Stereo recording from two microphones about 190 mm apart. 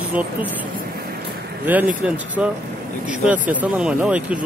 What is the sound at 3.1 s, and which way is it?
Speech, 5° right (ahead or behind).